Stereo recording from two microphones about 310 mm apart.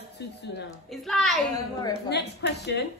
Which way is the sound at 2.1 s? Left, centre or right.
Left.